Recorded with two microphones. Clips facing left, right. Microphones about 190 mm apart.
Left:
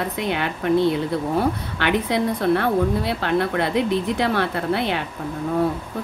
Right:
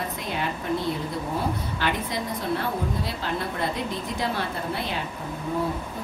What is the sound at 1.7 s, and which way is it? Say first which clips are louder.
A woman's voice: left 7 dB; 70° left (ahead or behind).